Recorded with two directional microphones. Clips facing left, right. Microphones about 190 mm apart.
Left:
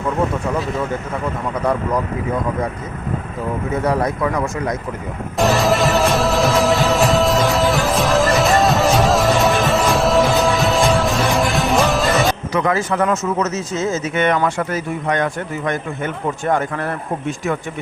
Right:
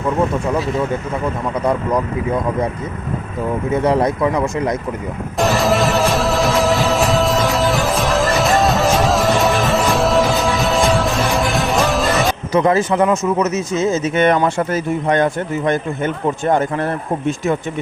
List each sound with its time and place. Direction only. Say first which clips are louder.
3.8 s speech: right 3 dB; 20° right (ahead or behind)
5.4 s music: even; centre (ahead or behind)
12.5 s speech: right 5 dB; 25° right (ahead or behind)
14.2 s speech: right 2 dB; 30° right (ahead or behind)